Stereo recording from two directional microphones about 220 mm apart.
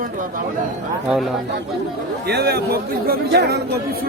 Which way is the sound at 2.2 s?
50° right (ahead or behind).